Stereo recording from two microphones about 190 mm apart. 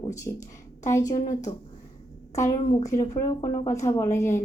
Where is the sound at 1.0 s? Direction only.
40° left (ahead or behind).